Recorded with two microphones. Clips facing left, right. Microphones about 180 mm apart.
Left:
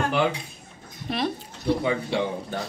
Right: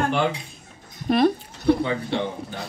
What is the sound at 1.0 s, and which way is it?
Speech, 50° right (ahead or behind).